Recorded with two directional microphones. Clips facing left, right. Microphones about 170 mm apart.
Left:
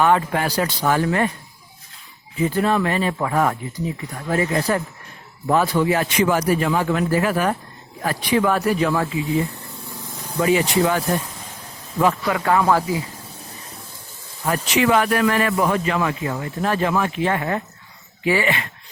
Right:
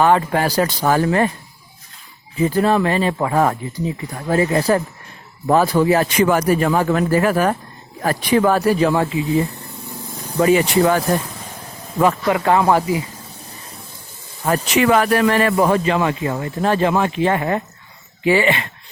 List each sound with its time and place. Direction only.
0.0 s a man's voice: 35° right (ahead or behind)
2.4 s a man's voice: 35° right (ahead or behind)
10.4 s a man's voice: 45° right (ahead or behind)
12.3 s speech: 25° right (ahead or behind)
14.4 s a man's voice: 45° right (ahead or behind); by 18.7 s 25° right (ahead or behind)